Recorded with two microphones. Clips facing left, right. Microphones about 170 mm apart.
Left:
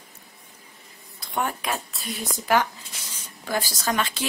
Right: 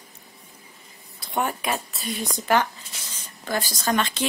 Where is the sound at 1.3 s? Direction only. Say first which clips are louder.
Right 2 dB; centre (ahead or behind).